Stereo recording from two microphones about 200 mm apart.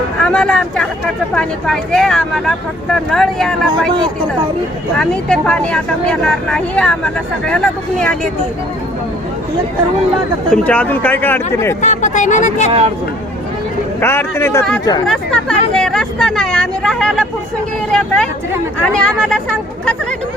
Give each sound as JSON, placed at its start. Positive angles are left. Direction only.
{"t": 0.2, "sound": "speech", "side_deg": 5}
{"t": 4.9, "sound": "speech", "side_deg": 5}
{"t": 10.5, "sound": "speech", "side_deg": 5}
{"t": 11.8, "sound": "speech", "side_deg": 35}
{"t": 14.0, "sound": "speech", "side_deg": 10}
{"t": 15.0, "sound": "speech", "side_deg": 5}